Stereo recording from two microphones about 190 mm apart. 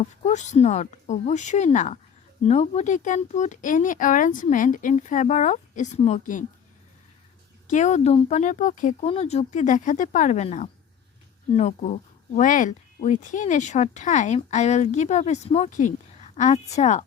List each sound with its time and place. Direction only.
0.0 s speech: 35° left (ahead or behind)
7.7 s speech: 40° left (ahead or behind)